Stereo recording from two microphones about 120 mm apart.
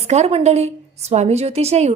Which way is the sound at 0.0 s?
65° right (ahead or behind).